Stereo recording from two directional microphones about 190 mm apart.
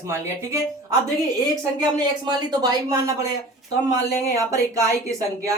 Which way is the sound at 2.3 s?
20° right (ahead or behind).